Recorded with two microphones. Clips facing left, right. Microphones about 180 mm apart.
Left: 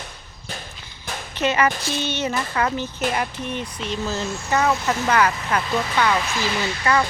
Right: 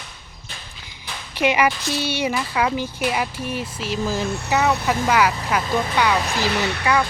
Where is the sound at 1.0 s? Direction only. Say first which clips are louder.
Left 4 dB; 45° left (ahead or behind).